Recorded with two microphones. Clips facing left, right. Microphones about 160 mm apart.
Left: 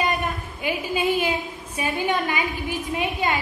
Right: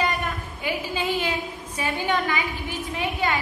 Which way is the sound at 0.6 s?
15° left (ahead or behind).